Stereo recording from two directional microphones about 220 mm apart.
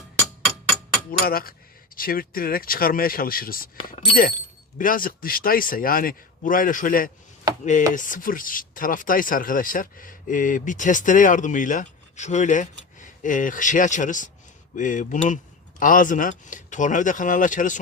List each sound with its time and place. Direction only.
1.2 s cutlery: 45° left (ahead or behind)
2.0 s speech: 40° left (ahead or behind)